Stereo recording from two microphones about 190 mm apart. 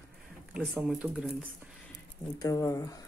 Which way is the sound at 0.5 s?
5° right (ahead or behind).